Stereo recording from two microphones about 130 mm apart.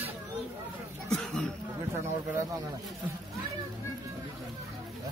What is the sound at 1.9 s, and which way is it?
Speech, 20° right (ahead or behind).